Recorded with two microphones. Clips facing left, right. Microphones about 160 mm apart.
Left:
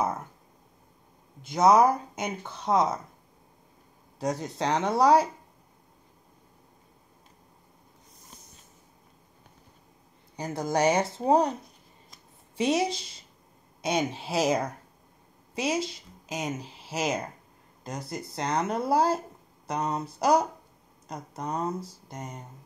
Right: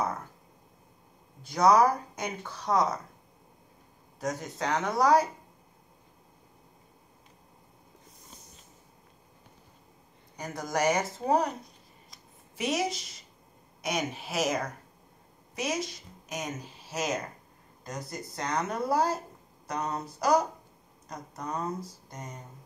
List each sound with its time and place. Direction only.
1.4 s speech: 25° left (ahead or behind)
4.2 s speech: 30° left (ahead or behind)
10.3 s speech: 30° left (ahead or behind)
12.5 s speech: 30° left (ahead or behind)